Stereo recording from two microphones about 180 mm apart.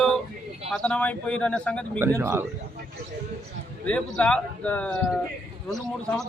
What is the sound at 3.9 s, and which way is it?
Speech, 5° left (ahead or behind).